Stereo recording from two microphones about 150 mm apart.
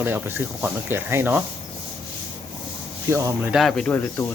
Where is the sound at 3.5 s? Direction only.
Centre (ahead or behind).